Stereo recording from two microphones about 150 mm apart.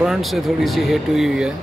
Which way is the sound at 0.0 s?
Centre (ahead or behind).